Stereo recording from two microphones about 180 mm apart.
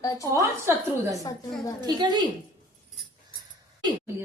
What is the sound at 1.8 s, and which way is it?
Speech, 25° right (ahead or behind).